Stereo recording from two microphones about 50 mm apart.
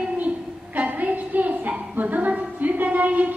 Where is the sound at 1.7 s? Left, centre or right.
Centre.